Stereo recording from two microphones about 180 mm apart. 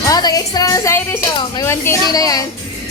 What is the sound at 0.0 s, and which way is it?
A woman's voice, 20° left (ahead or behind).